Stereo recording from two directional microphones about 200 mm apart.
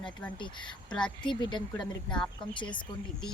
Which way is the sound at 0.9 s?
5° left (ahead or behind).